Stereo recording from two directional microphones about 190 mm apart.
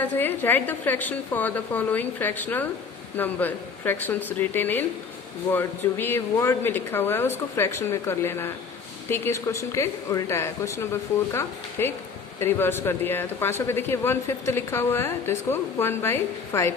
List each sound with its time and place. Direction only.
0.0 s a man's voice: 10° left (ahead or behind)